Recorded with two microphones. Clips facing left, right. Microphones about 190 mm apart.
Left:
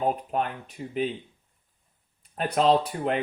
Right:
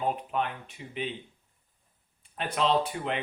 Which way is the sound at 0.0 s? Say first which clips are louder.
Left 3 dB; 40° left (ahead or behind).